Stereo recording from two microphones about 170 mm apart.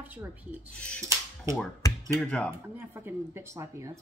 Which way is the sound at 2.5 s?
10° right (ahead or behind).